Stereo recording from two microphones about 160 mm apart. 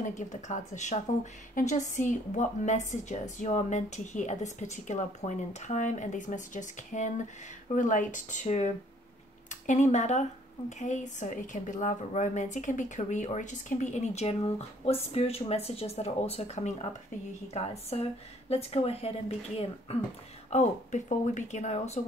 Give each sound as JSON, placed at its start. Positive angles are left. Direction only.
{"t": 0.0, "sound": "a woman's voice", "side_deg": 50}